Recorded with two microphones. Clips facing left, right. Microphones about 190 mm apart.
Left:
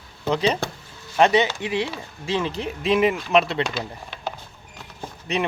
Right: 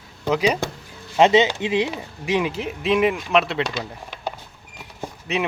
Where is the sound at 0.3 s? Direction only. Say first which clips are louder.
Right 2 dB; 10° right (ahead or behind).